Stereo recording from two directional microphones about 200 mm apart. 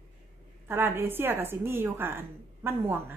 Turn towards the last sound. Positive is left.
turn(degrees=-10)  # may be behind; listen again after turning